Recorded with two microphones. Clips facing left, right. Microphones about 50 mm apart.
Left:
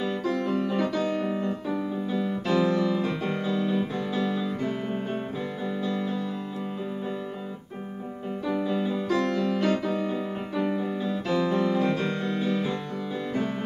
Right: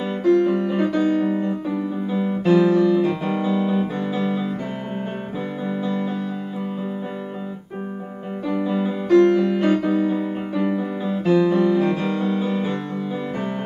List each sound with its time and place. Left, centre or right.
0.4 s music: centre
2.5 s music: centre
8.6 s music: centre
10.5 s music: centre